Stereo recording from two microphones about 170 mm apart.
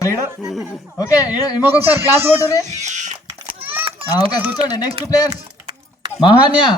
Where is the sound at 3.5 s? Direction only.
35° right (ahead or behind).